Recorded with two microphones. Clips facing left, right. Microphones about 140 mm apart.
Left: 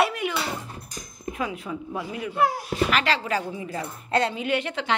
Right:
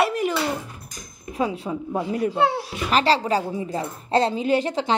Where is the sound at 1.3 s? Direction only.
30° right (ahead or behind).